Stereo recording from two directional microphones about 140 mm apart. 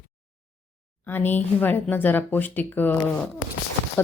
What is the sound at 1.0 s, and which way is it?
Speech, 15° left (ahead or behind).